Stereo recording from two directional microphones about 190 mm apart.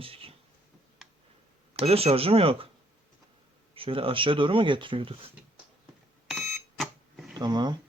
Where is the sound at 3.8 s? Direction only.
30° right (ahead or behind).